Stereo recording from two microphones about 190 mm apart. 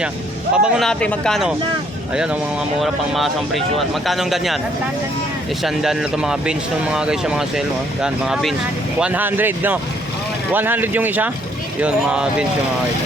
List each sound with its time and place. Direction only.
0.5 s speech: centre (ahead or behind)
5.6 s speech: centre (ahead or behind)